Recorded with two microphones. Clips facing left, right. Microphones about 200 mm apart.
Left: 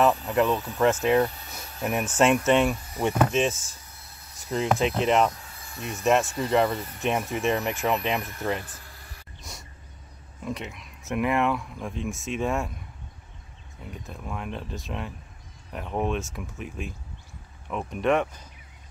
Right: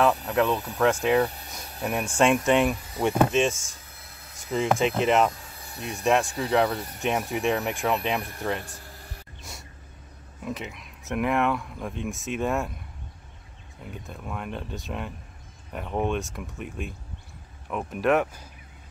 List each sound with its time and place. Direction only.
0.0 s speech: 5° left (ahead or behind)
5.6 s vehicle: 35° right (ahead or behind)
6.0 s speech: centre (ahead or behind)
8.6 s a sound: 40° right (ahead or behind)
10.4 s speech: centre (ahead or behind)
13.8 s speech: centre (ahead or behind)